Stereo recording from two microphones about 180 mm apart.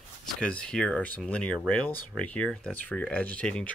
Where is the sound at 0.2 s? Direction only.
5° left (ahead or behind).